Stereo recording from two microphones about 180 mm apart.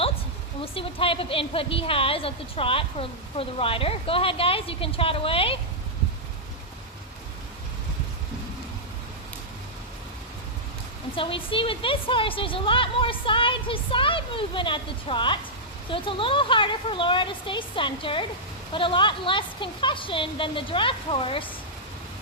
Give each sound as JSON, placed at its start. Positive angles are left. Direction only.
{"t": 0.6, "sound": "a woman's voice", "side_deg": 30}
{"t": 11.1, "sound": "a woman's voice", "side_deg": 30}